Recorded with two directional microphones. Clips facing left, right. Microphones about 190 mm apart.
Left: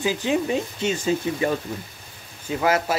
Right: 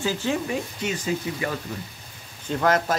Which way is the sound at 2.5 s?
5° left (ahead or behind).